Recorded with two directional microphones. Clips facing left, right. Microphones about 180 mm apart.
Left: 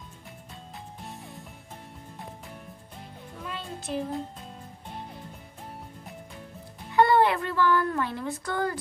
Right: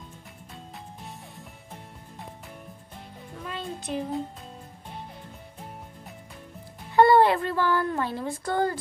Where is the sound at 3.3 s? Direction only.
Centre (ahead or behind).